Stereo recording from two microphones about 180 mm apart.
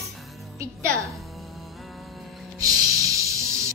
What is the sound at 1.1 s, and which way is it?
Music, centre (ahead or behind).